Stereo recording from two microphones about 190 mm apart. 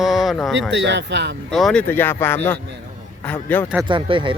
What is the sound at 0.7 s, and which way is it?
Speech, 65° right (ahead or behind).